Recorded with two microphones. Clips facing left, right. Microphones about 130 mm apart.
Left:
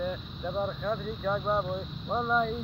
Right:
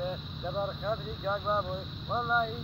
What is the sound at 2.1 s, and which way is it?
Speech, 5° right (ahead or behind).